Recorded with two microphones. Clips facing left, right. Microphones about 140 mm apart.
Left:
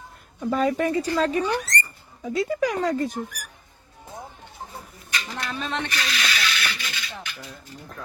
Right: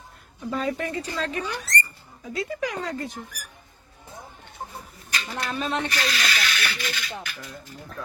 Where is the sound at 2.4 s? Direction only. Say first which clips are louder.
Left 6 dB; 40° left (ahead or behind).